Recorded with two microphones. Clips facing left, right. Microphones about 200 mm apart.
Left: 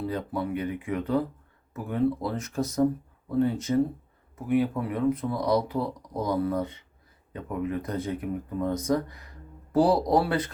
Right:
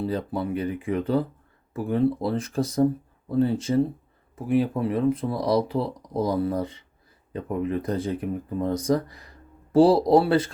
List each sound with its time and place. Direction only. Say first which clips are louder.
0.0 s speech: right 3 dB; 30° right (ahead or behind)